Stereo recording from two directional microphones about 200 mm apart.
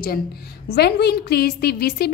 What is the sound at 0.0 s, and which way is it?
A woman's voice, 50° left (ahead or behind).